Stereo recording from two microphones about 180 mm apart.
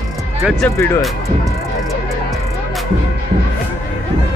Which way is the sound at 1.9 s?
Centre (ahead or behind).